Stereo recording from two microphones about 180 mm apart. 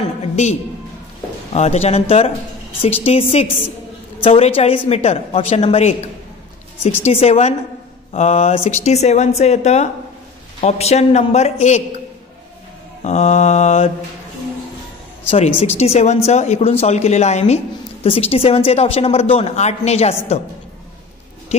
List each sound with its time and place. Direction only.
0.2 s music: 40° left (ahead or behind)
1.5 s a woman's voice: 35° left (ahead or behind)
7.1 s a woman's voice: 35° left (ahead or behind)
13.0 s a woman's voice: 40° left (ahead or behind)
15.2 s a woman's voice: 35° left (ahead or behind)